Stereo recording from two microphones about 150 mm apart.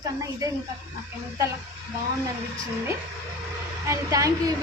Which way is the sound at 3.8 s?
20° right (ahead or behind).